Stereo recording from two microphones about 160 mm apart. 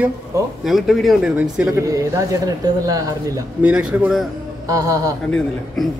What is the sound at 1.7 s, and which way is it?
A man's voice, 20° right (ahead or behind).